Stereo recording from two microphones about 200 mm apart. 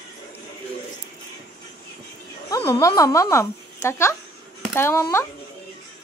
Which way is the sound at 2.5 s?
15° left (ahead or behind).